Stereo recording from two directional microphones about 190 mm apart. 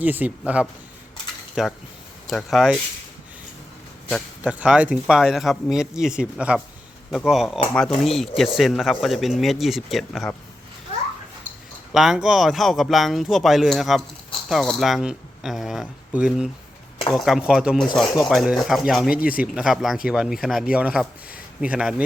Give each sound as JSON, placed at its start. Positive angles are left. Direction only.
{"t": 0.0, "sound": "speech", "side_deg": -10}
{"t": 4.1, "sound": "speech", "side_deg": -5}
{"t": 11.9, "sound": "speech", "side_deg": -5}
{"t": 19.1, "sound": "speech", "side_deg": 50}
{"t": 19.4, "sound": "speech", "side_deg": -5}